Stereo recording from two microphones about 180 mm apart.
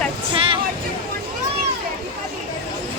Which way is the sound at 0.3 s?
30° right (ahead or behind).